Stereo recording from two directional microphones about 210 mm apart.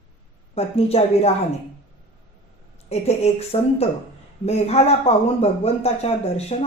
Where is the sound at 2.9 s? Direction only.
30° left (ahead or behind).